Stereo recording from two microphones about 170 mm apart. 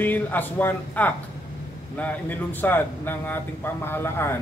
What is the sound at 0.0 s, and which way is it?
Speech, 10° left (ahead or behind).